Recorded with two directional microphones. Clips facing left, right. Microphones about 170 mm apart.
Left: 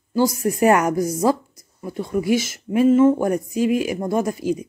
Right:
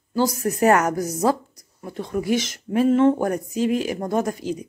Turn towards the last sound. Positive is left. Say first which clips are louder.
# left 3 dB
turn(degrees=10)  # may be behind; listen again after turning